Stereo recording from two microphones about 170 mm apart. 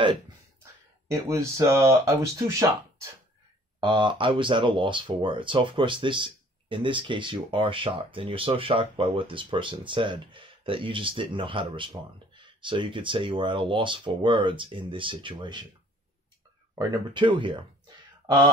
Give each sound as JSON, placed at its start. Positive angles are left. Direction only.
{"t": 1.0, "sound": "speech", "side_deg": -15}
{"t": 3.8, "sound": "speech", "side_deg": -25}
{"t": 16.7, "sound": "speech", "side_deg": -25}